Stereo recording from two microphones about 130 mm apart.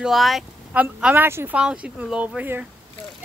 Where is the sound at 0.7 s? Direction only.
15° right (ahead or behind).